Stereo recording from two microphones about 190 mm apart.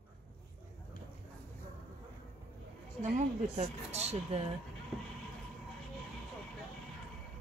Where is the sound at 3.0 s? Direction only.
35° right (ahead or behind).